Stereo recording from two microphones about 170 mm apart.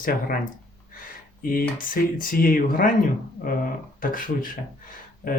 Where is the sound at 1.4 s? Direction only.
55° left (ahead or behind).